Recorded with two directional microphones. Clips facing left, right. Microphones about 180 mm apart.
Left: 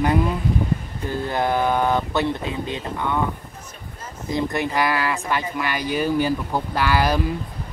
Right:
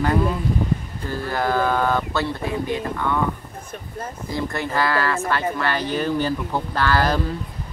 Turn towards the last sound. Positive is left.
turn(degrees=10)  # may be behind; listen again after turning